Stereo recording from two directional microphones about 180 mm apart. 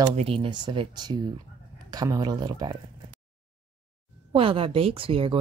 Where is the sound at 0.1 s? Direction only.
35° right (ahead or behind).